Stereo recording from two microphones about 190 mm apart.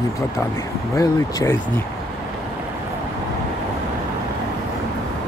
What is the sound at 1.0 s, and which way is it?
Speech, 15° left (ahead or behind).